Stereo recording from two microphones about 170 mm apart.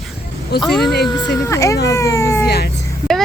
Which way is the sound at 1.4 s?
20° left (ahead or behind).